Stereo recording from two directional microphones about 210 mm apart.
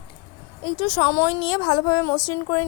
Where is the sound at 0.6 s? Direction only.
20° left (ahead or behind).